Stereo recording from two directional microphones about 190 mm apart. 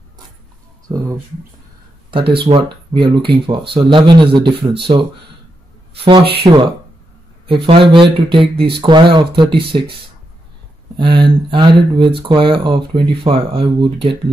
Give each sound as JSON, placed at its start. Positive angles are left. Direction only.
{"t": 0.9, "sound": "speech", "side_deg": -30}
{"t": 2.4, "sound": "speech", "side_deg": -25}
{"t": 6.0, "sound": "speech", "side_deg": -30}
{"t": 7.6, "sound": "speech", "side_deg": -30}
{"t": 8.5, "sound": "speech", "side_deg": -60}
{"t": 8.8, "sound": "speech", "side_deg": -25}
{"t": 11.0, "sound": "speech", "side_deg": -25}